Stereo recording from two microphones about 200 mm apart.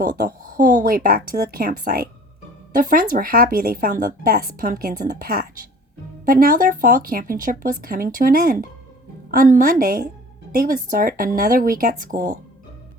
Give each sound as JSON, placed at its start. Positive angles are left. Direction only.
{"t": 0.0, "sound": "speech", "side_deg": -45}